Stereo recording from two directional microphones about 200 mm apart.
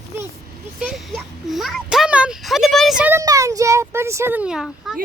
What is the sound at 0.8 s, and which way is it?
Speech, centre (ahead or behind).